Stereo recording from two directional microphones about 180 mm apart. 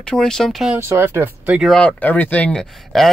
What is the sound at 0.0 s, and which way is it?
Speech, 5° left (ahead or behind).